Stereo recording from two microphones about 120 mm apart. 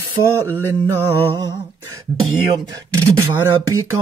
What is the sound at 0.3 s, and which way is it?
Speech, 25° right (ahead or behind).